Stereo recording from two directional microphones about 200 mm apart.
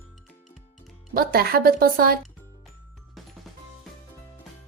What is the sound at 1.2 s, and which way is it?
A woman's voice, 50° right (ahead or behind).